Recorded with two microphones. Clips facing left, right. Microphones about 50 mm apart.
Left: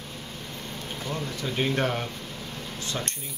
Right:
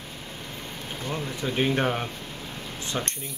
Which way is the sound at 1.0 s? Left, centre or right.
Centre.